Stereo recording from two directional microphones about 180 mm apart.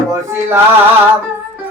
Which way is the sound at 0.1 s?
15° right (ahead or behind).